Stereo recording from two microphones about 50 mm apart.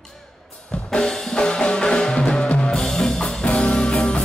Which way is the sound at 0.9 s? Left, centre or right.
Centre.